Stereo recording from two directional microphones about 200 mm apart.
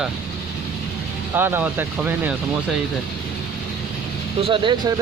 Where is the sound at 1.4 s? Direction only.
10° right (ahead or behind).